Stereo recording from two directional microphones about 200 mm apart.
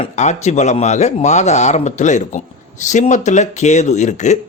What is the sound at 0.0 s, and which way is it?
Speech, 35° left (ahead or behind).